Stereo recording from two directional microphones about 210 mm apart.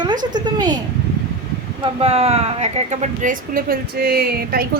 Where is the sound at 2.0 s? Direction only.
30° right (ahead or behind).